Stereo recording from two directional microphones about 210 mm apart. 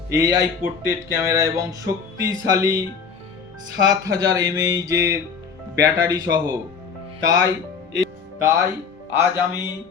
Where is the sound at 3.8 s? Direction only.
15° right (ahead or behind).